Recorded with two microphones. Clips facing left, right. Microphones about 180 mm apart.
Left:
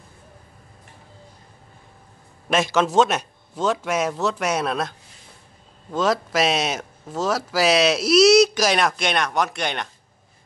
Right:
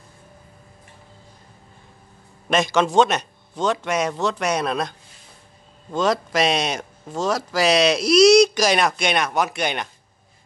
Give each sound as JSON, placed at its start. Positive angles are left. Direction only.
{"t": 2.5, "sound": "speech", "side_deg": 5}